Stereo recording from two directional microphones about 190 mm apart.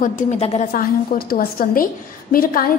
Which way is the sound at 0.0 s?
40° left (ahead or behind).